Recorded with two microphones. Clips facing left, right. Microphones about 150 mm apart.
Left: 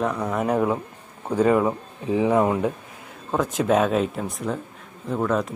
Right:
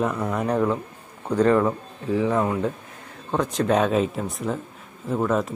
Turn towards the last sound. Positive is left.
turn(degrees=0)  # may be behind; listen again after turning